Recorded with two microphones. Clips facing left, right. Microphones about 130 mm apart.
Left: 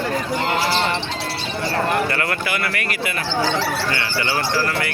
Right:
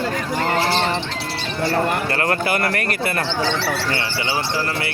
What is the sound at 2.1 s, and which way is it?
Speech, 40° right (ahead or behind).